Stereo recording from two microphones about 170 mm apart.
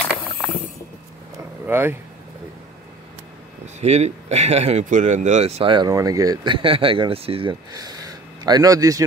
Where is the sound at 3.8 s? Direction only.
40° right (ahead or behind).